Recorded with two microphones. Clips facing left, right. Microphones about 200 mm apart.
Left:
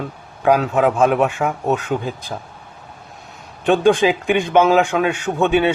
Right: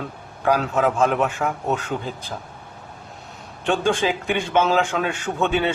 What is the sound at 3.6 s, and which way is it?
A man's voice, 15° left (ahead or behind).